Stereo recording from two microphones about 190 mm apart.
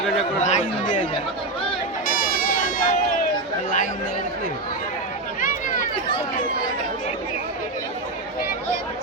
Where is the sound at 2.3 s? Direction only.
50° left (ahead or behind).